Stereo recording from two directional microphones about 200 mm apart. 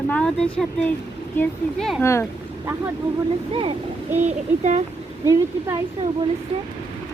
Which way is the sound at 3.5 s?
25° right (ahead or behind).